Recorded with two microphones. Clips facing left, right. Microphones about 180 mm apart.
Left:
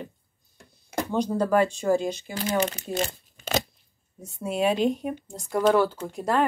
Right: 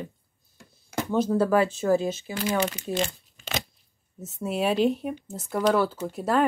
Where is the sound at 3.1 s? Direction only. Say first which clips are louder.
Left 6 dB; 45° left (ahead or behind).